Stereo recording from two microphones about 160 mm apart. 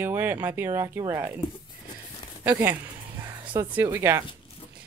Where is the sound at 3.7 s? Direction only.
15° right (ahead or behind).